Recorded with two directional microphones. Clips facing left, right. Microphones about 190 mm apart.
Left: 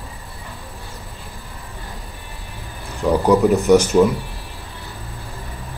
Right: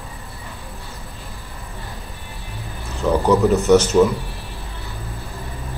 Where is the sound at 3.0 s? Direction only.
10° left (ahead or behind).